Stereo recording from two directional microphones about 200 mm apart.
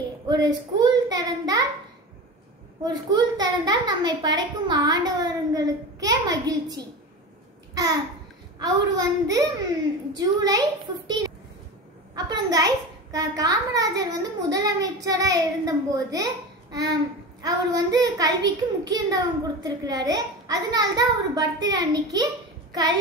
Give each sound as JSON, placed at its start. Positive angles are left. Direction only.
{"t": 0.3, "sound": "child singing", "side_deg": -20}
{"t": 2.8, "sound": "a woman's voice", "side_deg": -20}
{"t": 7.7, "sound": "babbling", "side_deg": -20}
{"t": 8.5, "sound": "a woman's voice", "side_deg": -20}
{"t": 17.4, "sound": "a woman's voice", "side_deg": -20}